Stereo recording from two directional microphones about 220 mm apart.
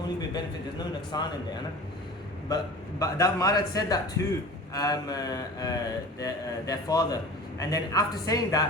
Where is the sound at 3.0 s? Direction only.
15° left (ahead or behind).